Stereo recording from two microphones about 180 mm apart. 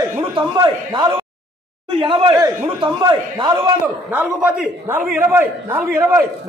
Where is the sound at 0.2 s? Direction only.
25° right (ahead or behind).